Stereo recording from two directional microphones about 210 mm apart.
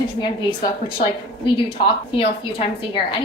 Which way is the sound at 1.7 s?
25° left (ahead or behind).